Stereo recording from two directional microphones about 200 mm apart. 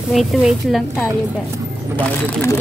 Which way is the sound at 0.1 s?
Centre (ahead or behind).